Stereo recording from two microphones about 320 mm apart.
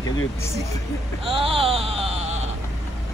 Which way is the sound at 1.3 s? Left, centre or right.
Centre.